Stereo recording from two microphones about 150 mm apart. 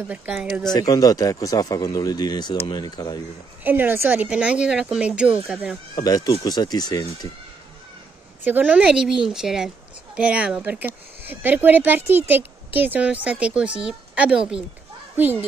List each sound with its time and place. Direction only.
0.3 s speech: centre (ahead or behind)
0.7 s speech: 25° left (ahead or behind)
3.6 s speech: 15° right (ahead or behind)
5.9 s speech: 25° left (ahead or behind)
8.5 s speech: 10° right (ahead or behind)